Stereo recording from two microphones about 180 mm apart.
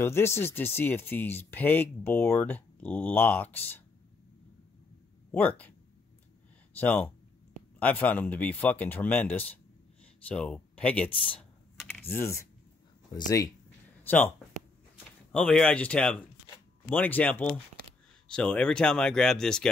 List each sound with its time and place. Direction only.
0.0 s speech: 15° left (ahead or behind)
5.3 s speech: 10° left (ahead or behind)
6.8 s speech: 10° left (ahead or behind)
15.3 s speech: 5° left (ahead or behind)